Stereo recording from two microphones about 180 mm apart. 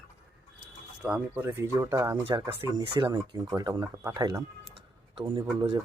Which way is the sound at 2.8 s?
30° right (ahead or behind).